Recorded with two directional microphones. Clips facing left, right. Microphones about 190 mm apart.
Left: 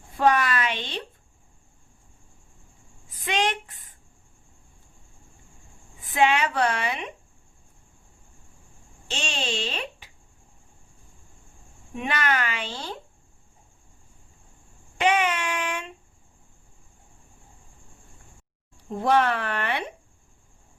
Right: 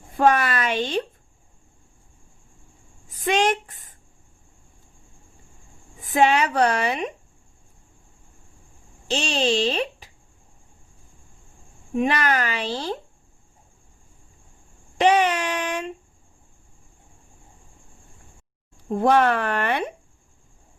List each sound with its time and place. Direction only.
0.2 s speech: 45° right (ahead or behind)
3.1 s speech: 45° right (ahead or behind)
6.0 s a woman's voice: 40° right (ahead or behind)
9.0 s a child's voice: 35° right (ahead or behind)
11.9 s a woman's voice: 35° right (ahead or behind)
14.9 s a woman's voice: 35° right (ahead or behind)
18.9 s speech: 55° right (ahead or behind)